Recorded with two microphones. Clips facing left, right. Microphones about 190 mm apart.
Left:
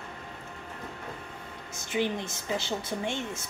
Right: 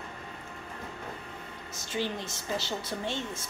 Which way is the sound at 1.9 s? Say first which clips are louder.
Left 4 dB; 20° left (ahead or behind).